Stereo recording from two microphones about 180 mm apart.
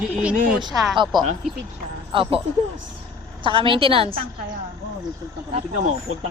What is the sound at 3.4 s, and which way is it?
Speech, 30° right (ahead or behind).